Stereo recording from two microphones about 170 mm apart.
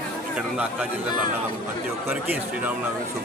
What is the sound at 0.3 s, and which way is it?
Speech, 10° right (ahead or behind).